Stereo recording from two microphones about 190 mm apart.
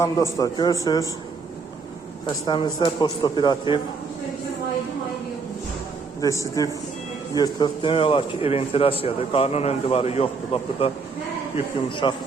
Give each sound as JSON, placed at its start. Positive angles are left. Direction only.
{"t": 0.0, "sound": "a man's voice", "side_deg": 15}
{"t": 2.2, "sound": "a man's voice", "side_deg": 25}
{"t": 6.2, "sound": "a man's voice", "side_deg": 15}